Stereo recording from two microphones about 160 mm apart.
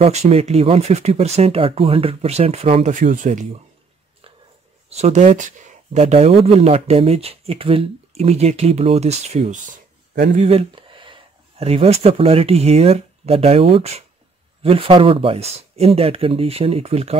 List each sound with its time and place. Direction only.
0.0 s speech: 40° right (ahead or behind)
4.8 s speech: 40° right (ahead or behind)
10.7 s speech: 30° right (ahead or behind)